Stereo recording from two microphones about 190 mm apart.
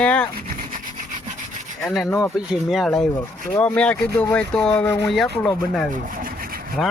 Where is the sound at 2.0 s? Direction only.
15° left (ahead or behind).